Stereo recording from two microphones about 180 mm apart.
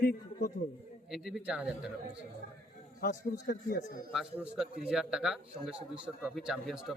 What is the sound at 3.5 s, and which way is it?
Speech, 65° left (ahead or behind).